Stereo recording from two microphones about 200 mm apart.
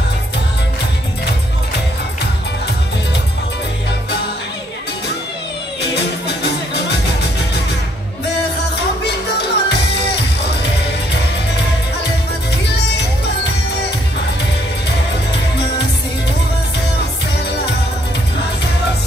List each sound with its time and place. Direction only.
5.8 s music: 55° left (ahead or behind)
9.0 s music: 55° left (ahead or behind)